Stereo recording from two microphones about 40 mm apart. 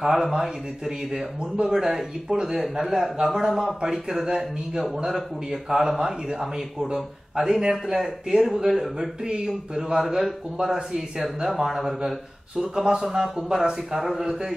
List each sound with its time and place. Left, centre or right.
0.0 s speech: centre
9.2 s speech: right
9.8 s speech: centre
12.5 s speech: centre